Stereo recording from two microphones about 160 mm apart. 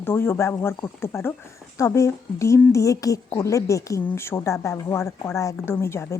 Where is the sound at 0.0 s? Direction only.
15° left (ahead or behind).